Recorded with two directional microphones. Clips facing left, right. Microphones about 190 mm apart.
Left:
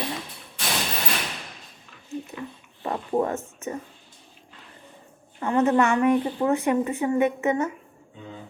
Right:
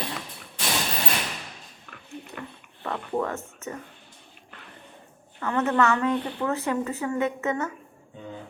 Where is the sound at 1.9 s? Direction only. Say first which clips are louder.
Left 5 dB; 60° right (ahead or behind).